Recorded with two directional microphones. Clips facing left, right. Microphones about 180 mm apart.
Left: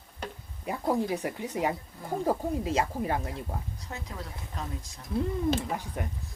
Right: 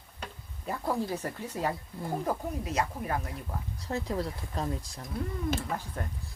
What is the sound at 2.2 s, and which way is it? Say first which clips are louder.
Speech: left 9 dB; 30° left (ahead or behind).